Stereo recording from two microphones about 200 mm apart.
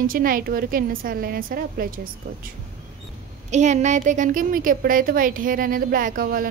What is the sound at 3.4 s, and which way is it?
Speech, 35° right (ahead or behind).